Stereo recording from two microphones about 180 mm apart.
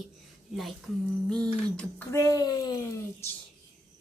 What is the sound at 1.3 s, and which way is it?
Speech, 5° left (ahead or behind).